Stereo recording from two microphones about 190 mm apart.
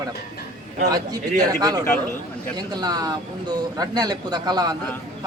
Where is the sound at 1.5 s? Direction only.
20° right (ahead or behind).